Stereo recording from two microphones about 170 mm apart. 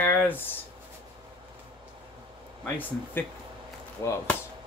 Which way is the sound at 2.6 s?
10° left (ahead or behind).